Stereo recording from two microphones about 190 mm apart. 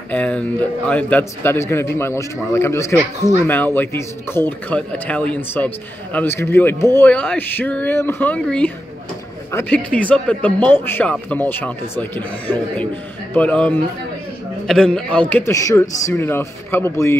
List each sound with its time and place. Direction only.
0.1 s a man's voice: 5° left (ahead or behind)